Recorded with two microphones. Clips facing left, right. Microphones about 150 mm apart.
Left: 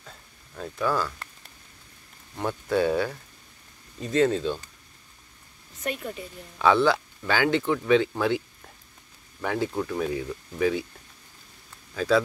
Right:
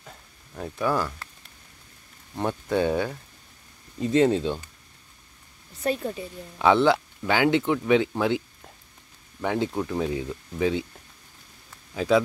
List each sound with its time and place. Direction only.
0.6 s speech: 15° right (ahead or behind)
2.3 s speech: 20° right (ahead or behind)
5.9 s speech: 30° right (ahead or behind)
6.6 s speech: 20° right (ahead or behind)
9.4 s speech: 20° right (ahead or behind)
11.9 s speech: 20° right (ahead or behind)